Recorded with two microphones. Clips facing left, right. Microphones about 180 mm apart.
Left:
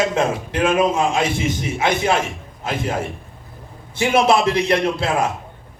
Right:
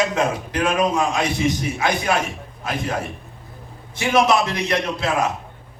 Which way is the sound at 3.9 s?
30° left (ahead or behind).